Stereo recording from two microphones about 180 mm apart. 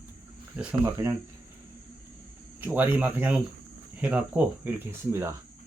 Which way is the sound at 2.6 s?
10° right (ahead or behind).